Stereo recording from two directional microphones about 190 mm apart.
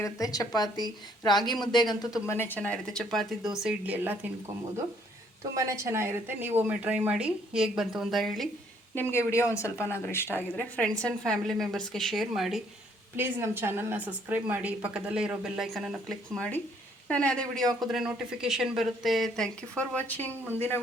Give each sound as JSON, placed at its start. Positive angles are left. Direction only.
{"t": 0.0, "sound": "a woman's voice", "side_deg": 20}
{"t": 5.5, "sound": "a woman's voice", "side_deg": -15}
{"t": 9.0, "sound": "a woman's voice", "side_deg": 15}